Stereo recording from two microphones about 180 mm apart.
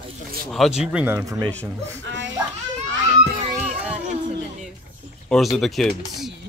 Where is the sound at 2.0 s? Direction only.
90° right.